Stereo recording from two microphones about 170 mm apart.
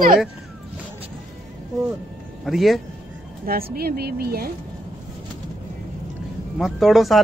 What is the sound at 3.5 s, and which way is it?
Speech, 65° right (ahead or behind).